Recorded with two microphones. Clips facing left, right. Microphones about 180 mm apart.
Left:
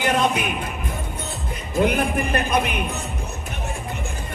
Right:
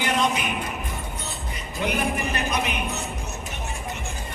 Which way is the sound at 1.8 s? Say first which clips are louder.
Left 5 dB; 55° left (ahead or behind).